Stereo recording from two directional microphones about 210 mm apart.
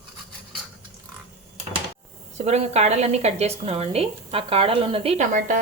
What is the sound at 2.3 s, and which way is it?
A woman's voice, 30° right (ahead or behind).